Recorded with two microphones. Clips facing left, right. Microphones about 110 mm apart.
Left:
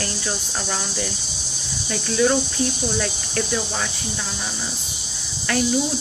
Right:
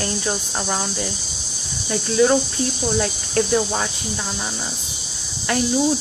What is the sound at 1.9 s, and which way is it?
Speech, 30° right (ahead or behind).